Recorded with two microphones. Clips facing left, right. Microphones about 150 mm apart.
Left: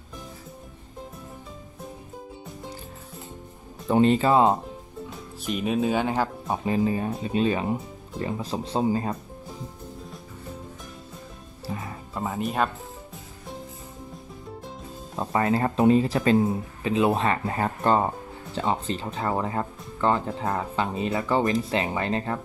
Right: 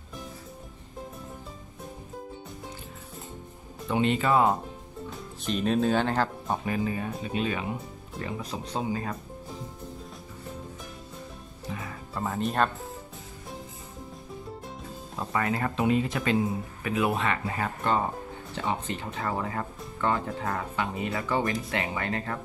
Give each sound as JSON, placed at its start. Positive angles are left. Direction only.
{"t": 3.9, "sound": "speech", "side_deg": 35}
{"t": 5.4, "sound": "speech", "side_deg": 10}
{"t": 6.6, "sound": "speech", "side_deg": 30}
{"t": 11.6, "sound": "music", "side_deg": 35}
{"t": 12.1, "sound": "speech", "side_deg": 10}
{"t": 15.1, "sound": "speech", "side_deg": 30}